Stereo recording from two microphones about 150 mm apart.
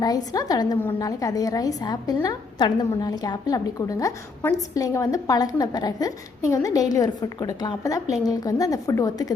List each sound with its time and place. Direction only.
0.3 s a woman's voice: 25° left (ahead or behind)